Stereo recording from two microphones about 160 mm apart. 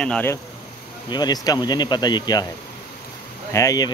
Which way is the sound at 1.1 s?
25° left (ahead or behind).